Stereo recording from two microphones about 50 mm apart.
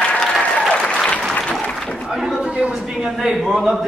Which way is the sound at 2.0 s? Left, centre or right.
Centre.